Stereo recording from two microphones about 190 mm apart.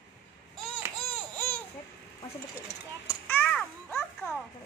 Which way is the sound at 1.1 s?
10° left (ahead or behind).